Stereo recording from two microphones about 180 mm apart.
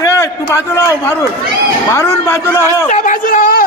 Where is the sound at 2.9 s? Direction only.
45° left (ahead or behind).